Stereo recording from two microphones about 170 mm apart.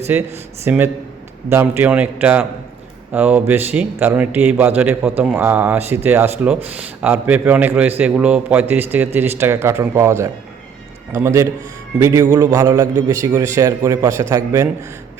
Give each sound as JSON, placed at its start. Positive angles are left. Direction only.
{"t": 0.1, "sound": "a man's voice", "side_deg": -15}